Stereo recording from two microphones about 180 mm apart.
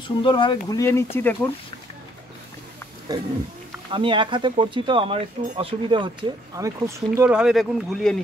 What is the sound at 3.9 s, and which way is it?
Speech, 25° right (ahead or behind).